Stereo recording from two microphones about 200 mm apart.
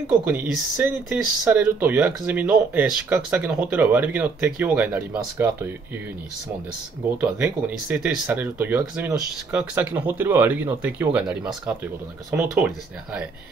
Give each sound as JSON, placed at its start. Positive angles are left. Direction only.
{"t": 0.2, "sound": "speech", "side_deg": -10}
{"t": 7.2, "sound": "speech", "side_deg": -5}